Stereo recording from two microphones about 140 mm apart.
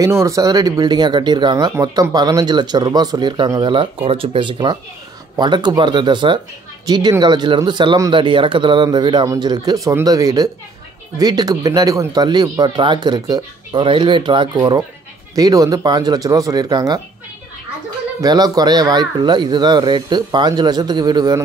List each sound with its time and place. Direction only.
0.0 s speech: 20° right (ahead or behind)
18.2 s speech: 30° right (ahead or behind)